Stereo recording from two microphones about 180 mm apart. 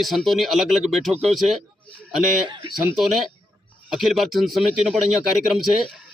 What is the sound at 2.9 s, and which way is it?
A man's voice, centre (ahead or behind).